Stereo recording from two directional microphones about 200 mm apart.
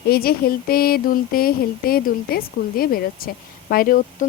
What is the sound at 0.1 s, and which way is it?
Speech, 50° left (ahead or behind).